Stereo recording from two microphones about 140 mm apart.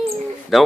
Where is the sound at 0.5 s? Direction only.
Centre (ahead or behind).